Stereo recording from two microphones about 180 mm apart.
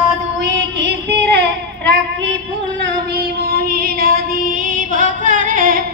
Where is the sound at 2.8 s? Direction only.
75° right (ahead or behind).